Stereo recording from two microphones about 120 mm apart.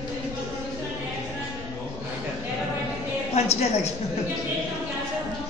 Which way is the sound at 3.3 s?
60° left (ahead or behind).